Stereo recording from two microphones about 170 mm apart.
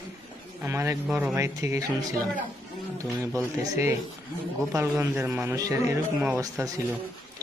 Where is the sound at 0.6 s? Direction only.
15° right (ahead or behind).